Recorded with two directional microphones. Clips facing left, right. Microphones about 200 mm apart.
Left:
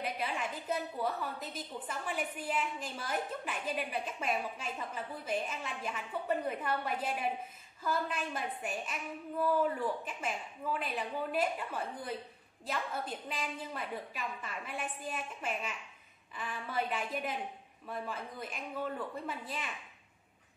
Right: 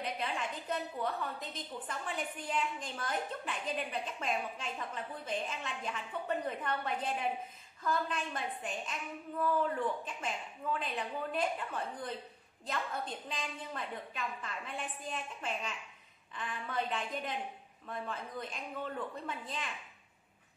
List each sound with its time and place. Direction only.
0.0 s a woman's voice: 10° left (ahead or behind)